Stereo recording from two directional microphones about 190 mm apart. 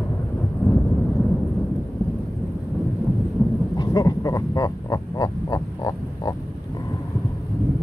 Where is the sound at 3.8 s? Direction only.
20° left (ahead or behind).